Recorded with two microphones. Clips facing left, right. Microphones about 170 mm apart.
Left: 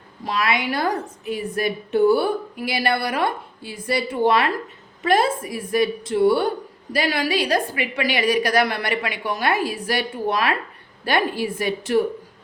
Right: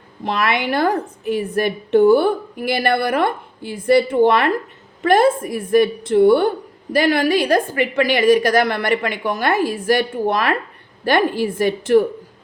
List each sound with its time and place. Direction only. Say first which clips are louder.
0.3 s a woman's voice: right 3 dB; 55° right (ahead or behind)